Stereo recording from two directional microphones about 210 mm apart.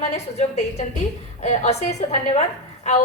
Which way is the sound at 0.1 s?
30° left (ahead or behind).